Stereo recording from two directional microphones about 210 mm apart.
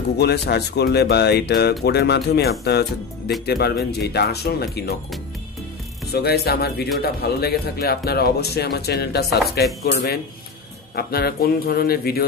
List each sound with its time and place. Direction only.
0.2 s speech: 50° left (ahead or behind)
6.1 s speech: 50° left (ahead or behind)
11.0 s speech: 45° left (ahead or behind)